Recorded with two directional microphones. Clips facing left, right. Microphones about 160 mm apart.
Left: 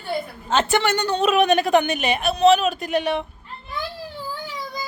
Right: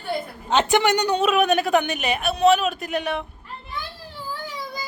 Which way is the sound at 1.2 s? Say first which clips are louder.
Left 4 dB; centre (ahead or behind).